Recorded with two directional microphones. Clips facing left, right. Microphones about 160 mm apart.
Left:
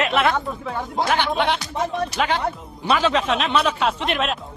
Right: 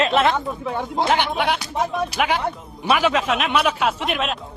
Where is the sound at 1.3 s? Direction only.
5° right (ahead or behind).